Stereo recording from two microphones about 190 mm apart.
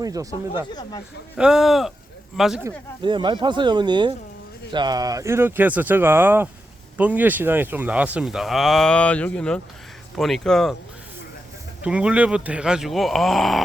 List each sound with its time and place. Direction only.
0.0 s speech: 20° right (ahead or behind)
0.7 s speech: 20° left (ahead or behind)
1.4 s speech: 5° right (ahead or behind)
3.0 s speech: 25° right (ahead or behind); by 10.8 s centre (ahead or behind)
11.8 s speech: 5° right (ahead or behind)